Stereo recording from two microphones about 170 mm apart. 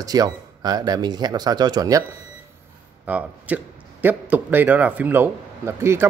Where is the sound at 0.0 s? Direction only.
20° right (ahead or behind).